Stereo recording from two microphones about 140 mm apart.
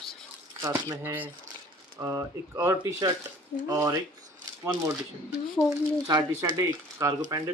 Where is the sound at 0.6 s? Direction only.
20° right (ahead or behind).